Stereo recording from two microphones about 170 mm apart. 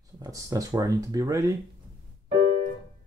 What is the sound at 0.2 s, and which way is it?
Speech, 20° right (ahead or behind).